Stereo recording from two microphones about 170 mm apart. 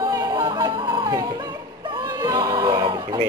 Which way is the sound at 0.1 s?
20° right (ahead or behind).